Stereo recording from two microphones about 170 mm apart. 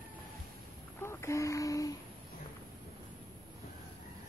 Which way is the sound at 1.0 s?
15° left (ahead or behind).